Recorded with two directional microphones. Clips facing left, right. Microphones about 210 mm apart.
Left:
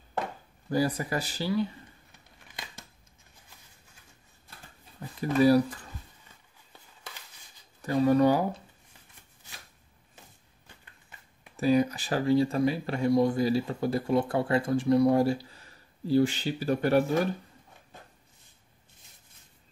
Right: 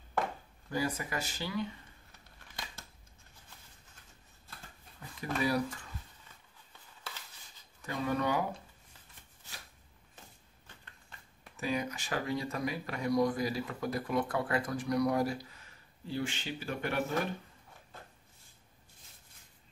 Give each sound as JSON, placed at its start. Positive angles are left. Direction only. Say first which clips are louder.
{"t": 0.7, "sound": "speech", "louder": "left 7 dB", "side_deg": 35}
{"t": 5.2, "sound": "speech", "louder": "left 10 dB", "side_deg": 35}
{"t": 7.8, "sound": "speech", "louder": "left 11 dB", "side_deg": 35}
{"t": 11.5, "sound": "speech", "louder": "left 11 dB", "side_deg": 35}